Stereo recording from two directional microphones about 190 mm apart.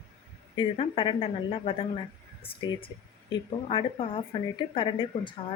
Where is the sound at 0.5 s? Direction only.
30° left (ahead or behind).